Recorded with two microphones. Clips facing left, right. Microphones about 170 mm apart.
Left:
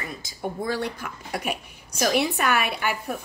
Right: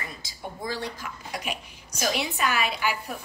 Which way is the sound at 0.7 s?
60° left (ahead or behind).